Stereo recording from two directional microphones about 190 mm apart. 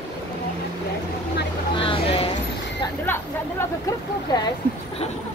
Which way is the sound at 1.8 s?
30° left (ahead or behind).